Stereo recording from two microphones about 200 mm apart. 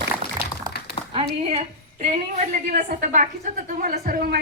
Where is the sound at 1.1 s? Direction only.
30° right (ahead or behind).